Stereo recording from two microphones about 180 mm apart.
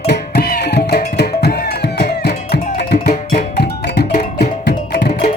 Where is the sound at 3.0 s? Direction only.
40° left (ahead or behind).